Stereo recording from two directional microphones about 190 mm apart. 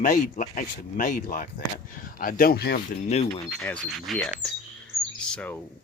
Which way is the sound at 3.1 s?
35° left (ahead or behind).